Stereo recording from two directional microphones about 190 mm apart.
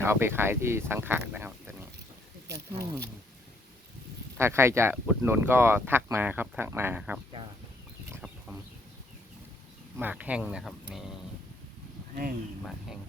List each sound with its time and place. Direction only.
0.0 s speech: 10° right (ahead or behind)
4.4 s speech: 15° right (ahead or behind)
8.1 s chicken: 5° right (ahead or behind)
10.0 s speech: 10° right (ahead or behind)